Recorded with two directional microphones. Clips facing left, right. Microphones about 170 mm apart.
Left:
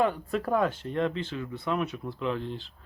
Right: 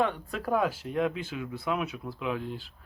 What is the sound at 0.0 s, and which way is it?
Speech, centre (ahead or behind).